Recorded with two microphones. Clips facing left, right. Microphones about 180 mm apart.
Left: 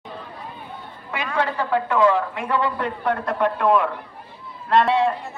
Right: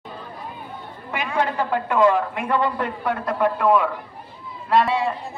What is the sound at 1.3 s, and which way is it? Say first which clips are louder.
Speech: right 1 dB; 15° right (ahead or behind).